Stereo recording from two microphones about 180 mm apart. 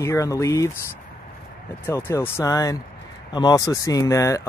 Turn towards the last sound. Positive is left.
turn(degrees=15)  # may be behind; listen again after turning